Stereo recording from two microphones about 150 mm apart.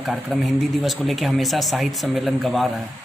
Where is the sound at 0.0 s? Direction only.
Centre (ahead or behind).